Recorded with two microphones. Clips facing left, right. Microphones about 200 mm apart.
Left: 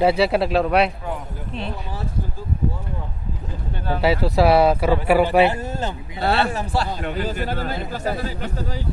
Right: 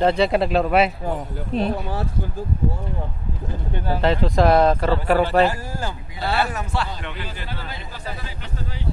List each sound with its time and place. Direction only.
0.0 s speech: 5° left (ahead or behind)
1.5 s speech: 40° right (ahead or behind)
4.0 s speech: 10° left (ahead or behind)
6.3 s a man's voice: 30° left (ahead or behind); by 8.5 s 45° left (ahead or behind)